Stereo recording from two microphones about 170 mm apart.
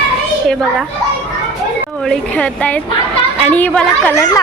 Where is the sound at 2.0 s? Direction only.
5° left (ahead or behind).